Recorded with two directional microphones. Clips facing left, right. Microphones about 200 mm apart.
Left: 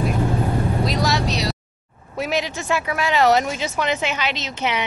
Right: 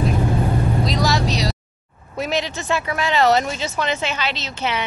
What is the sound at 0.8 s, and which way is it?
Vehicle, centre (ahead or behind).